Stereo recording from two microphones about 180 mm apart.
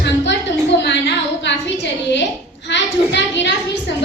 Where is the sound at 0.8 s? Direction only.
75° left (ahead or behind).